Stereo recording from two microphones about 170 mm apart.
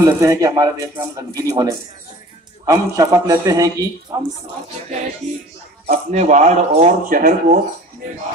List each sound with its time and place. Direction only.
0.0 s speech: 20° right (ahead or behind)
2.6 s a woman's voice: 20° right (ahead or behind)
5.9 s speech: 45° right (ahead or behind)